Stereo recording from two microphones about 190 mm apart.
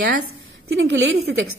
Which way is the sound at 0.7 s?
65° right (ahead or behind).